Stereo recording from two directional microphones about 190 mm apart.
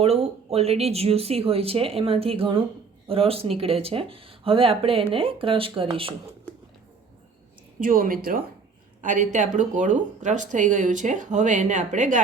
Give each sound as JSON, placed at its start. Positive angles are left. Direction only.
{"t": 0.0, "sound": "speech", "side_deg": -35}
{"t": 7.8, "sound": "a woman's voice", "side_deg": -50}